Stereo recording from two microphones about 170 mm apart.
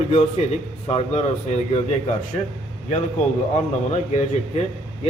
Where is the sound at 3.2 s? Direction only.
45° left (ahead or behind).